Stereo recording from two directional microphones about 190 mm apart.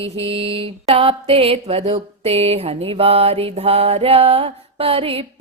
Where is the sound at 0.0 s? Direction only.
30° right (ahead or behind).